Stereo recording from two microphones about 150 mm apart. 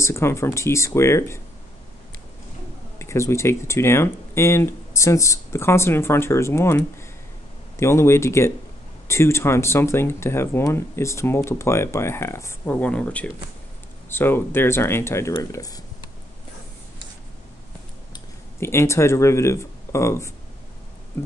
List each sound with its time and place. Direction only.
0.0 s speech: 20° left (ahead or behind)
3.0 s speech: 20° left (ahead or behind)
18.6 s speech: 15° left (ahead or behind)